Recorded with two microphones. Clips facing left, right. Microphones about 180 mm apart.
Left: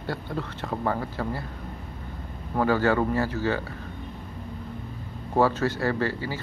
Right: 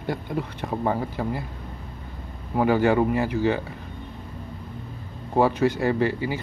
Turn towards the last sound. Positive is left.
turn(degrees=-15)  # may be behind; listen again after turning